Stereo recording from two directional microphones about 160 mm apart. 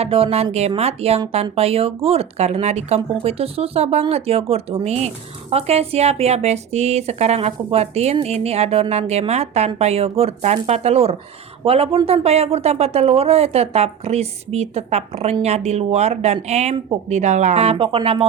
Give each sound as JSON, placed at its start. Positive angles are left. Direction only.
{"t": 0.0, "sound": "speech", "side_deg": -35}